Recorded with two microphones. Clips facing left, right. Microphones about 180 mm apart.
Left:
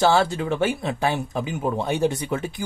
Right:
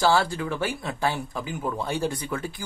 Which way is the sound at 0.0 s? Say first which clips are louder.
Left 3 dB; 20° left (ahead or behind).